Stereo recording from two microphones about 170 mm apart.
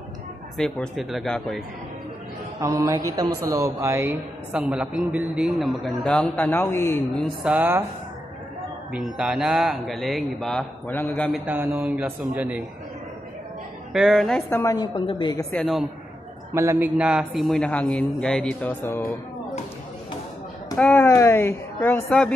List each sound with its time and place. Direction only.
0.6 s a man's voice: 5° left (ahead or behind)
2.6 s a man's voice: 20° right (ahead or behind); by 7.0 s 15° left (ahead or behind)
7.4 s a man's voice: 10° right (ahead or behind)
8.9 s a man's voice: 5° right (ahead or behind)
11.4 s a man's voice: 10° right (ahead or behind)
13.9 s a man's voice: centre (ahead or behind)
14.6 s a woman's voice: 25° left (ahead or behind)
15.5 s a man's voice: centre (ahead or behind)
16.5 s a man's voice: 15° right (ahead or behind); by 19.1 s 15° left (ahead or behind)
20.7 s a woman's voice: 10° left (ahead or behind)